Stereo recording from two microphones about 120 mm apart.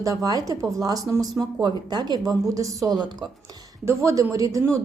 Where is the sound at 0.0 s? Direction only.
30° right (ahead or behind).